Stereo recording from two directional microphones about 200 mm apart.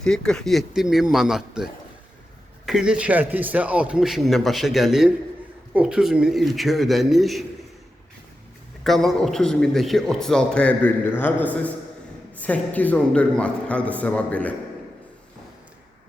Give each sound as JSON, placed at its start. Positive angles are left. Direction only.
{"t": 0.0, "sound": "a man's voice", "side_deg": 5}
{"t": 2.6, "sound": "a man's voice", "side_deg": -5}
{"t": 8.8, "sound": "a man's voice", "side_deg": 0}